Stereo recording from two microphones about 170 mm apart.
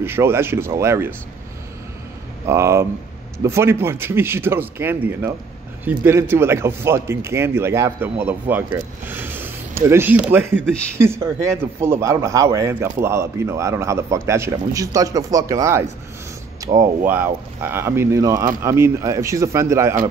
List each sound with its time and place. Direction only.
0.0 s speech: 15° right (ahead or behind)
2.4 s speech: 15° right (ahead or behind)